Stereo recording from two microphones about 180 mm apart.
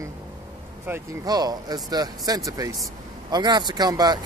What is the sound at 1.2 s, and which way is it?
Speech, 20° right (ahead or behind).